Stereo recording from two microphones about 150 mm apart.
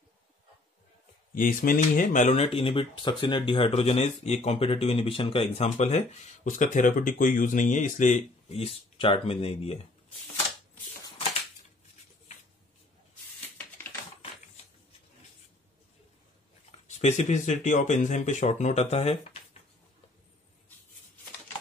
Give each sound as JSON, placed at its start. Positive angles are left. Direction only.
{"t": 1.3, "sound": "speech", "side_deg": 65}
{"t": 16.8, "sound": "speech", "side_deg": 50}